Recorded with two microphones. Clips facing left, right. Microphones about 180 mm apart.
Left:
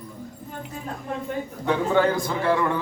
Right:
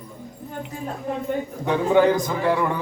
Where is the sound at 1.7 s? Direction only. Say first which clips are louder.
Right 3 dB; 15° right (ahead or behind).